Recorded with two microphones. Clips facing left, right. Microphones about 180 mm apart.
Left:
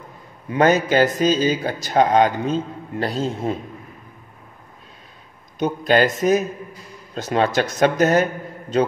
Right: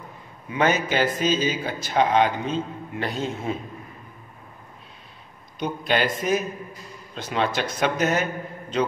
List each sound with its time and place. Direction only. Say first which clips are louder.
0.5 s speech: left 6 dB; 40° left (ahead or behind)
5.6 s a man's voice: left 6 dB; 45° left (ahead or behind)